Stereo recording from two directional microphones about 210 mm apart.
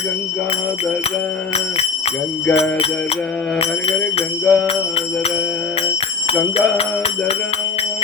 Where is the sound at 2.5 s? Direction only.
30° left (ahead or behind).